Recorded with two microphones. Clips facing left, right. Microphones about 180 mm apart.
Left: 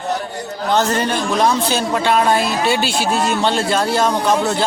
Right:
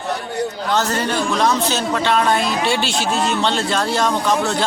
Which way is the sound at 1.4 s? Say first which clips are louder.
Left 3 dB; 10° left (ahead or behind).